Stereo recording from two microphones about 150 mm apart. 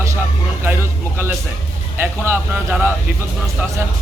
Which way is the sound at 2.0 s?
15° right (ahead or behind).